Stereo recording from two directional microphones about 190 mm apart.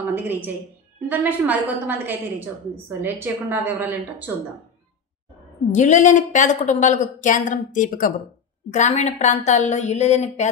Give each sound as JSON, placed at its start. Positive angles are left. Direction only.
{"t": 1.0, "sound": "a woman's voice", "side_deg": -10}
{"t": 5.7, "sound": "a woman's voice", "side_deg": 40}